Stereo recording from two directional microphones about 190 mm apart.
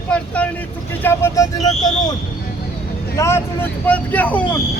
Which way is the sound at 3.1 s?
15° left (ahead or behind).